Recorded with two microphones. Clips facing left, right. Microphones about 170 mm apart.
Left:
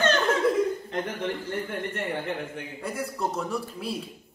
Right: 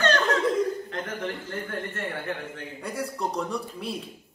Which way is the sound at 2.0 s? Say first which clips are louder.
Left 2 dB; 15° left (ahead or behind).